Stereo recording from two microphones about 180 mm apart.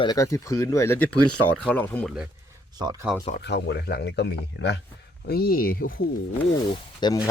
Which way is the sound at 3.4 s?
70° left (ahead or behind).